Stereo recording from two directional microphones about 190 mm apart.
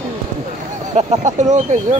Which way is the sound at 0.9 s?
40° right (ahead or behind).